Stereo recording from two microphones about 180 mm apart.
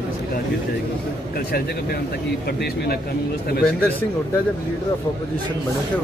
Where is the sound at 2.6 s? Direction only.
65° left (ahead or behind).